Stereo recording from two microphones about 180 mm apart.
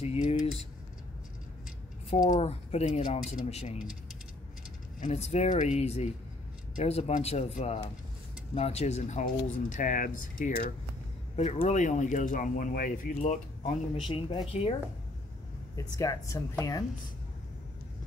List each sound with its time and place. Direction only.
0.0 s speech: 35° left (ahead or behind)
2.1 s speech: 45° left (ahead or behind)
5.0 s speech: 35° left (ahead or behind)
14.0 s a woman's voice: 30° left (ahead or behind)
15.7 s a woman's voice: 20° left (ahead or behind)